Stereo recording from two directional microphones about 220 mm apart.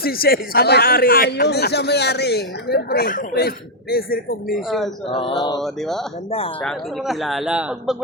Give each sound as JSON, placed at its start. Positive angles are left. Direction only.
{"t": 0.0, "sound": "a man's voice", "side_deg": 45}
{"t": 5.0, "sound": "mantra", "side_deg": 20}
{"t": 5.6, "sound": "speech", "side_deg": 0}